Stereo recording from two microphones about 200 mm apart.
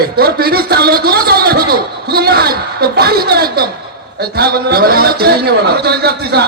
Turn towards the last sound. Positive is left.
turn(degrees=-55)  # may be behind; listen again after turning